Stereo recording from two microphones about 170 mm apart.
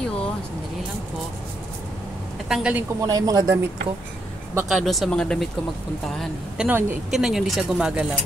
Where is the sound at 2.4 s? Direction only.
5° right (ahead or behind).